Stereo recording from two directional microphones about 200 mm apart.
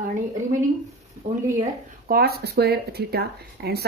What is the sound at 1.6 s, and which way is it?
Speech, 45° right (ahead or behind).